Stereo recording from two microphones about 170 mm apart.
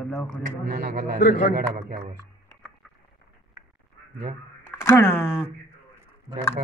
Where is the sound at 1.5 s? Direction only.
65° right (ahead or behind).